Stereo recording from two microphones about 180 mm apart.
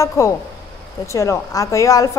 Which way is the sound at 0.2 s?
15° left (ahead or behind).